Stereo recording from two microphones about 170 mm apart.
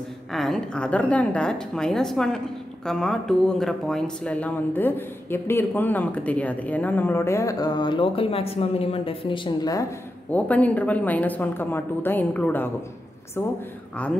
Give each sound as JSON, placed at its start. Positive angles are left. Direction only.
{"t": 0.3, "sound": "a woman's voice", "side_deg": 0}
{"t": 10.3, "sound": "a woman's voice", "side_deg": 10}